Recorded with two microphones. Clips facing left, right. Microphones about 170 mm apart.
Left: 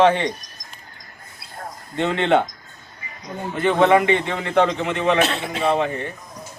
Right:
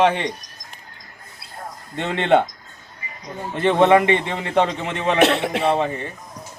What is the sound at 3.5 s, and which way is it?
A man's voice, 30° right (ahead or behind).